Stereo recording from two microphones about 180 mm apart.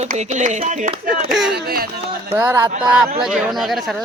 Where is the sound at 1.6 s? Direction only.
60° right (ahead or behind).